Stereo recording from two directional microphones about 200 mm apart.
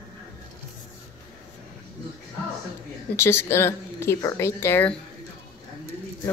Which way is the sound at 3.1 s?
10° left (ahead or behind).